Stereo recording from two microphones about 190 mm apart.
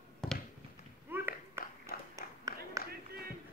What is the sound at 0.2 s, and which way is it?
Basketball bounce, centre (ahead or behind).